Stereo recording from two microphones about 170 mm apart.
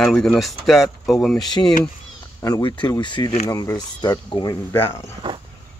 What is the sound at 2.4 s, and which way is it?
Speech, 25° left (ahead or behind).